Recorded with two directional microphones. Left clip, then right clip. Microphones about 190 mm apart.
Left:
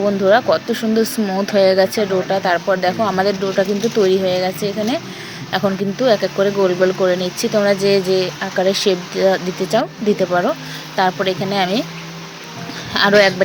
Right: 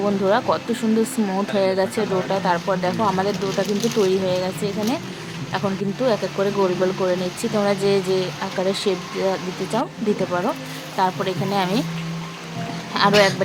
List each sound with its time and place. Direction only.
0.0 s speech: 10° left (ahead or behind)
10.9 s speech: 15° left (ahead or behind)
12.9 s speech: 15° left (ahead or behind)